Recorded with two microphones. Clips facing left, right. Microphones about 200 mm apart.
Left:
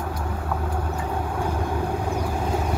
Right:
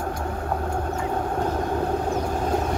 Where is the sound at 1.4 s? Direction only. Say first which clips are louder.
Right 1 dB; 10° left (ahead or behind).